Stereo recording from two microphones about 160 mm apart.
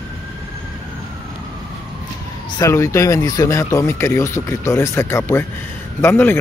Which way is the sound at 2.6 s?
20° left (ahead or behind).